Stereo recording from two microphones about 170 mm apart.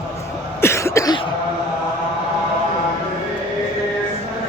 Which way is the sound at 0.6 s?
15° left (ahead or behind).